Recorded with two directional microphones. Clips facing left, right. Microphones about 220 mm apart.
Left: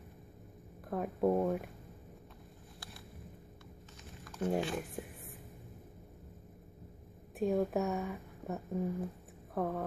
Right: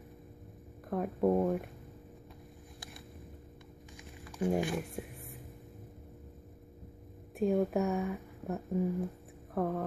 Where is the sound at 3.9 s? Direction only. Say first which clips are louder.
Right 2 dB; 10° right (ahead or behind).